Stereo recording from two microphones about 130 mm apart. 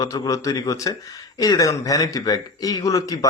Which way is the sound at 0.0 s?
25° left (ahead or behind).